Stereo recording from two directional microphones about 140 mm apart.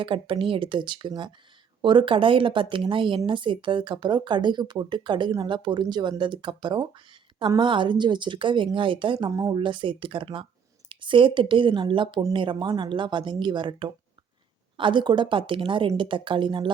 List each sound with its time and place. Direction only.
0.0 s speech: 40° right (ahead or behind)